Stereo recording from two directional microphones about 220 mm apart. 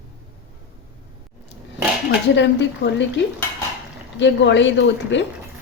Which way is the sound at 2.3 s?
55° left (ahead or behind).